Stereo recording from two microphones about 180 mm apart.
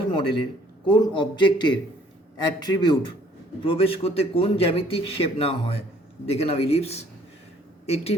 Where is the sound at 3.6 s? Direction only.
30° left (ahead or behind).